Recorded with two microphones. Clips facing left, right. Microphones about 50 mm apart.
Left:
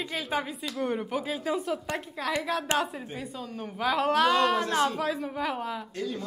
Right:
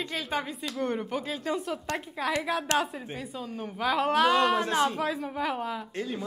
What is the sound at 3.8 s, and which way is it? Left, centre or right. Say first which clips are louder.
Speech: even; centre.